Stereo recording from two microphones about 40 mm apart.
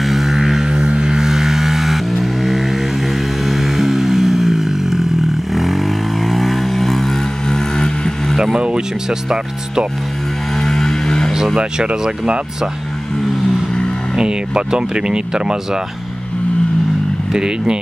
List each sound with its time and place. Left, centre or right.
0.0 s music: centre
2.1 s vehicle: centre
8.5 s speech: right
10.6 s vehicle: centre
11.5 s speech: right
14.1 s speech: centre
17.3 s speech: centre